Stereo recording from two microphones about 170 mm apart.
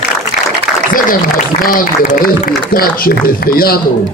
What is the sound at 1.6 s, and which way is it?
A man's voice, 55° left (ahead or behind).